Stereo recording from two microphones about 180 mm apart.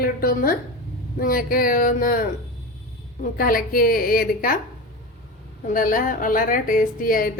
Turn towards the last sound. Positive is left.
turn(degrees=50)  # may be behind; listen again after turning